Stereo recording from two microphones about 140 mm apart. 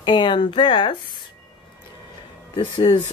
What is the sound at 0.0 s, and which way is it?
Speech, 35° left (ahead or behind).